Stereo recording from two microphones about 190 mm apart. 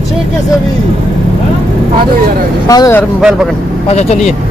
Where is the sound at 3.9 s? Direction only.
35° left (ahead or behind).